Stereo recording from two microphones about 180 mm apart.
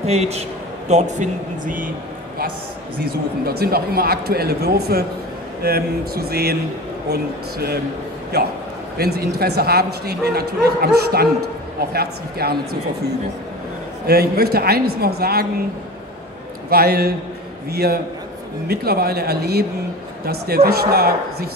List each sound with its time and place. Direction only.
0.0 s a man's voice: 35° right (ahead or behind)
3.1 s a man's voice: 60° right (ahead or behind)
14.0 s a man's voice: 60° right (ahead or behind)
16.6 s a man's voice: 60° right (ahead or behind)